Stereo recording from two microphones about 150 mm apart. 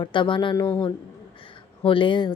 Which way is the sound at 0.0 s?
35° left (ahead or behind).